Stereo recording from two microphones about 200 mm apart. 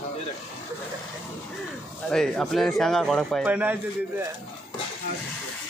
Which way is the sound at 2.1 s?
5° left (ahead or behind).